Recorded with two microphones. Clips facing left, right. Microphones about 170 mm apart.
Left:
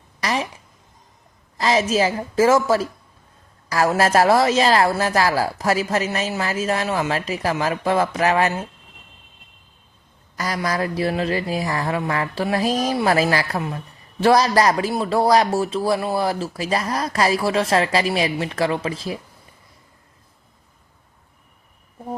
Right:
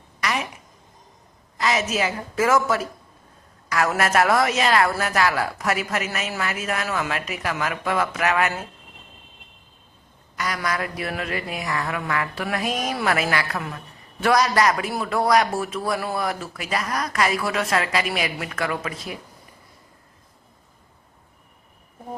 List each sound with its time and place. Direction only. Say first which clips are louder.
0.2 s a sound: left 3 dB; 30° left (ahead or behind)
1.5 s speech: left 5 dB; 30° left (ahead or behind)
10.3 s speech: left 3 dB; 35° left (ahead or behind)